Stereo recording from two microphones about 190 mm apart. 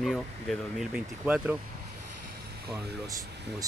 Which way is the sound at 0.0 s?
Centre (ahead or behind).